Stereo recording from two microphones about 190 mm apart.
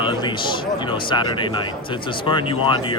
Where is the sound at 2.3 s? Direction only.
25° left (ahead or behind).